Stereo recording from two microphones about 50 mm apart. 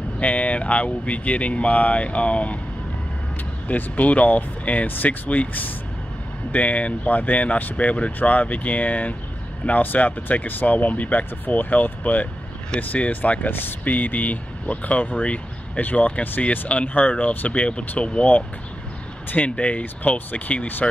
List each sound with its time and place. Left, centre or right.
0.2 s speech: left
3.6 s speech: left
17.5 s speech: left